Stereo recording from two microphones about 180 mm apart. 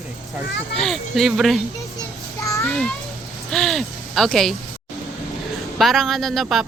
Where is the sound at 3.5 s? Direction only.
Centre (ahead or behind).